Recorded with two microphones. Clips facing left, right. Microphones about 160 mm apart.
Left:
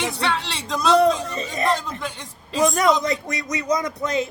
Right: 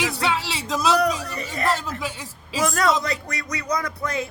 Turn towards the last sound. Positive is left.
turn(degrees=20)  # may be behind; listen again after turning